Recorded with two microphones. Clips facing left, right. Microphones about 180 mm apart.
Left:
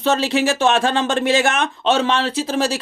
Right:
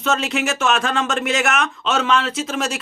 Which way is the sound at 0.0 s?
30° left (ahead or behind).